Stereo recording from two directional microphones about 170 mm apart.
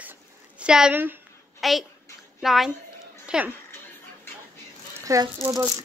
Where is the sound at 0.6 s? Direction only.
5° right (ahead or behind).